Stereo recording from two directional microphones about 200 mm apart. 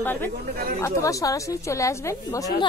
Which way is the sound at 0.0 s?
10° left (ahead or behind).